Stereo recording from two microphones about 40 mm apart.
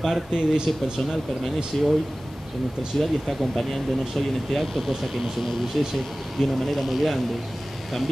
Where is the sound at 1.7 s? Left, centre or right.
Centre.